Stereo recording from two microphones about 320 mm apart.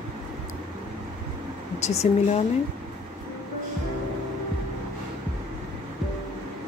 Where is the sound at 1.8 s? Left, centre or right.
Centre.